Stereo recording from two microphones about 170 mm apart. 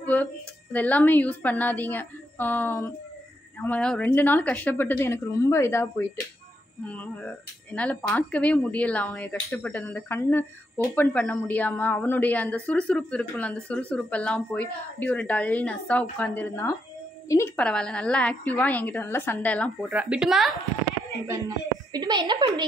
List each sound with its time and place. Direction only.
0.0 s a sound: 10° left (ahead or behind)
0.7 s speech: 10° left (ahead or behind)
19.9 s speech: 5° right (ahead or behind)
21.3 s a woman's voice: 20° right (ahead or behind)